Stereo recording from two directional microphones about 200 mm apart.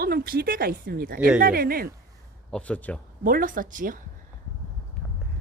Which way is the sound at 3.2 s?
45° right (ahead or behind).